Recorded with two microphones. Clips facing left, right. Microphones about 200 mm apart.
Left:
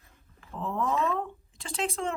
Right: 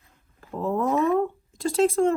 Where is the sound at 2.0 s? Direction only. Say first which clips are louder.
Right 11 dB; 45° right (ahead or behind).